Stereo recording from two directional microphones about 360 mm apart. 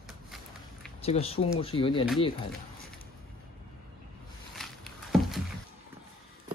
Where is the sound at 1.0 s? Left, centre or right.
Centre.